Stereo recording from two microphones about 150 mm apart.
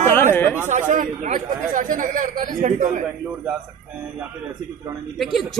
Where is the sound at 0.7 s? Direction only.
60° right (ahead or behind).